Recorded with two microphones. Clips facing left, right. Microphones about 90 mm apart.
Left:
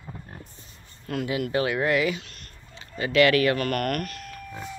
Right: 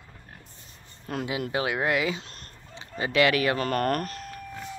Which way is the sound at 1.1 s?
20° right (ahead or behind).